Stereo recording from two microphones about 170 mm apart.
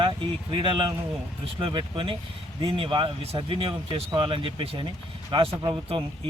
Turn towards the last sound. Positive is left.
turn(degrees=-30)  # may be behind; listen again after turning